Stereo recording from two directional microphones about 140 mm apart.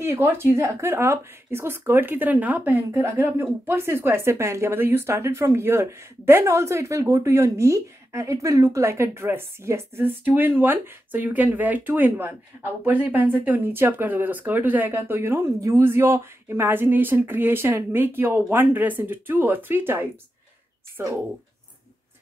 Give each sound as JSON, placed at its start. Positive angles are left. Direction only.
{"t": 0.0, "sound": "speech", "side_deg": -15}